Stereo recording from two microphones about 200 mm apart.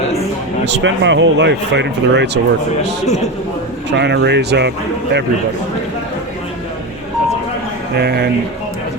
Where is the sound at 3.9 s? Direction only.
55° right (ahead or behind).